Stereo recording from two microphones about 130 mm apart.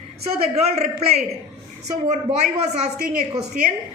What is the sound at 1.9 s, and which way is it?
Speech, 60° right (ahead or behind).